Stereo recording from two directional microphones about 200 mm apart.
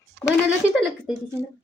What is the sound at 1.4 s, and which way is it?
Speech, 10° right (ahead or behind).